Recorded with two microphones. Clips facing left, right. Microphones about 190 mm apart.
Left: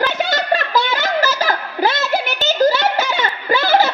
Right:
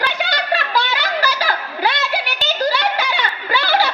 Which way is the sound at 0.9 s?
45° left (ahead or behind).